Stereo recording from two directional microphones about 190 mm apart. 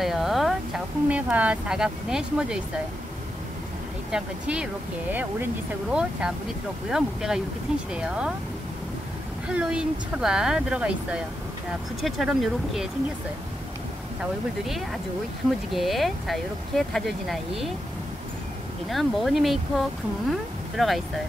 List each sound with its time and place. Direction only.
0.0 s speech: centre (ahead or behind)
4.1 s speech: 5° right (ahead or behind)
9.5 s speech: 5° right (ahead or behind)
15.7 s speech: centre (ahead or behind)
18.9 s speech: centre (ahead or behind)
20.7 s speech: centre (ahead or behind)